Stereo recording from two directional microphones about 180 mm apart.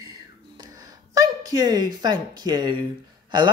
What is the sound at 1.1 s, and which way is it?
Speech, 20° right (ahead or behind).